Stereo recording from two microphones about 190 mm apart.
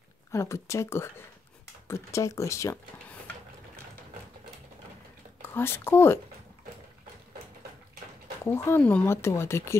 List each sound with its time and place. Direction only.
0.3 s speech: 15° left (ahead or behind)
5.4 s speech: 10° left (ahead or behind)
8.5 s speech: 10° left (ahead or behind)